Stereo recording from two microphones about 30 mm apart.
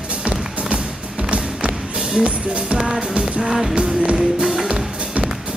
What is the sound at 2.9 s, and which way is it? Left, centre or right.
Music, right.